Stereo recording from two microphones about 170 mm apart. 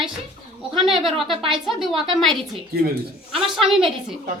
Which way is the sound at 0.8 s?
Centre (ahead or behind).